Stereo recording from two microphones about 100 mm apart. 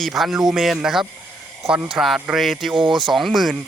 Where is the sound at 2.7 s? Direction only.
50° right (ahead or behind).